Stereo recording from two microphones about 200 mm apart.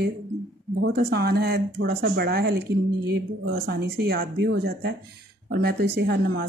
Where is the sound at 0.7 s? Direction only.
50° right (ahead or behind).